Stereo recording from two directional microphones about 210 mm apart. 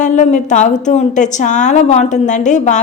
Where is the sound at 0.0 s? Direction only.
35° left (ahead or behind).